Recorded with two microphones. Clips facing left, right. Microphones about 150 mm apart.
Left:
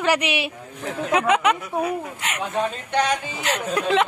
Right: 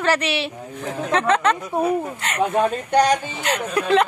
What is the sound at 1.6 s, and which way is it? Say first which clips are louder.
Speech: right 4 dB; 30° right (ahead or behind).